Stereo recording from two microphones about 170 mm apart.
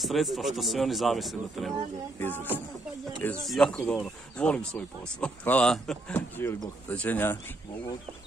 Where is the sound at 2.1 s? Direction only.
10° left (ahead or behind).